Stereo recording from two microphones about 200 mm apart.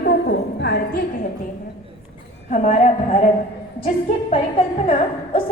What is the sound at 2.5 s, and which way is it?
A woman's voice, 40° left (ahead or behind).